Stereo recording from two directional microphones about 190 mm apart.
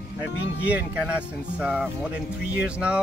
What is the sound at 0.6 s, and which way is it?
Speech, 5° right (ahead or behind).